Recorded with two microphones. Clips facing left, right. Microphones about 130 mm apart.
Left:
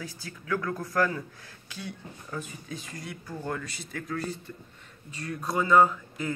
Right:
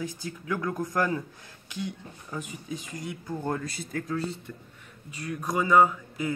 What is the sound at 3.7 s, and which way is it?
Speech, 45° right (ahead or behind).